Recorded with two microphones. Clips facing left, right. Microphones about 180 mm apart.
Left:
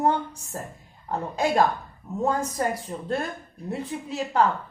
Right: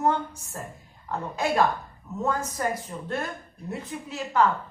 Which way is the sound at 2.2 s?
35° left (ahead or behind).